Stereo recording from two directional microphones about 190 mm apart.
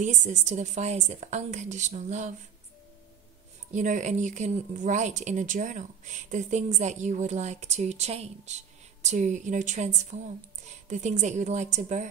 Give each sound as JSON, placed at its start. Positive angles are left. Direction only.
{"t": 0.0, "sound": "speech", "side_deg": -40}
{"t": 3.7, "sound": "speech", "side_deg": -40}